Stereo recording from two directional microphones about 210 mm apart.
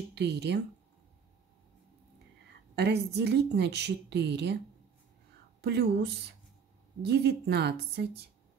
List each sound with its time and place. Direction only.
0.1 s a woman's voice: 55° right (ahead or behind)
2.7 s a woman's voice: 55° right (ahead or behind)
5.6 s a woman's voice: 50° right (ahead or behind)
7.0 s a woman's voice: 50° right (ahead or behind)